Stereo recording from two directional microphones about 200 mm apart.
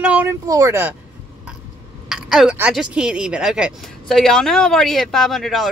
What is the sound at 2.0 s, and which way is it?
Speech, centre (ahead or behind).